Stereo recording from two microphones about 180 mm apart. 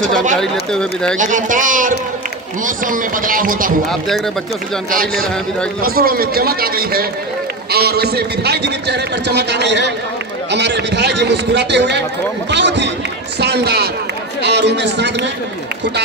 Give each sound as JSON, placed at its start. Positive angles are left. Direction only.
{"t": 0.4, "sound": "speech", "side_deg": 5}
{"t": 1.1, "sound": "speech", "side_deg": -45}
{"t": 4.9, "sound": "a man's voice", "side_deg": -55}